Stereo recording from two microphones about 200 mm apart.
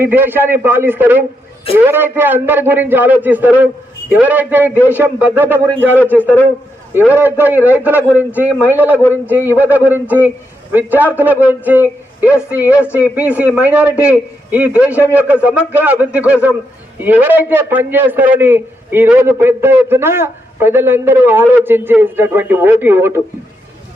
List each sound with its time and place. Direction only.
0.0 s a man's voice: 10° right (ahead or behind)
6.0 s speech: 10° left (ahead or behind)
6.9 s a man's voice: 10° right (ahead or behind)